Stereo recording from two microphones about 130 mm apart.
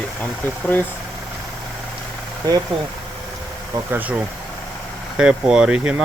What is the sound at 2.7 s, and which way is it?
Speech, 40° right (ahead or behind).